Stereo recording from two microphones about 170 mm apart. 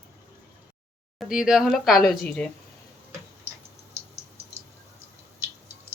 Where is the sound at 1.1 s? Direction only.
5° right (ahead or behind).